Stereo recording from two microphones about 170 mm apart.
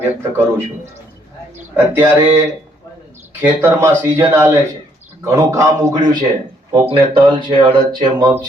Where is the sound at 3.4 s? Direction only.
15° right (ahead or behind); by 7.7 s 30° right (ahead or behind).